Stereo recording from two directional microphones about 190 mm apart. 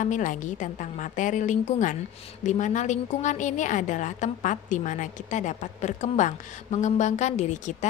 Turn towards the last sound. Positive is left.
turn(degrees=40)  # may be behind; listen again after turning